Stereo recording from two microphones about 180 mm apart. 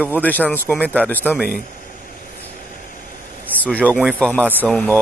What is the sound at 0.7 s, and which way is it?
Speech, 10° right (ahead or behind).